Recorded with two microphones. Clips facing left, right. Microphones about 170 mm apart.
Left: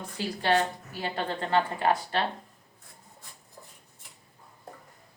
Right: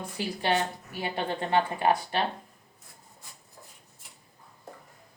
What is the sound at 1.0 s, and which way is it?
A woman's voice, 15° right (ahead or behind).